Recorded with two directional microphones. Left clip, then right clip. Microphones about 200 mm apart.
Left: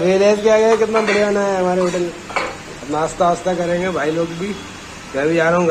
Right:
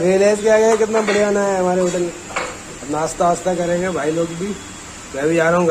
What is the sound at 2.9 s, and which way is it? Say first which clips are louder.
Speech: left 1 dB; 15° right (ahead or behind).